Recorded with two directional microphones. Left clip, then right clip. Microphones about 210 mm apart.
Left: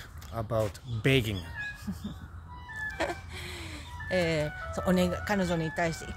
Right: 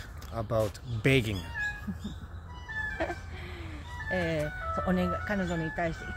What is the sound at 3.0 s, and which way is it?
Speech, 60° left (ahead or behind).